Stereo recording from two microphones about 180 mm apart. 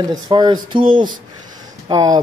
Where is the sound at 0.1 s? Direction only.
25° right (ahead or behind).